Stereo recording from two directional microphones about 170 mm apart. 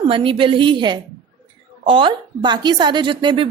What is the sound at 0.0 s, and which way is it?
A woman's voice, 30° right (ahead or behind).